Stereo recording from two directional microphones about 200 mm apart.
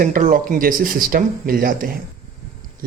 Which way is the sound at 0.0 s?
40° right (ahead or behind).